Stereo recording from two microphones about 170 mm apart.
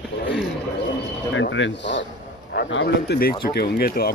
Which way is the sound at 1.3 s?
90° left.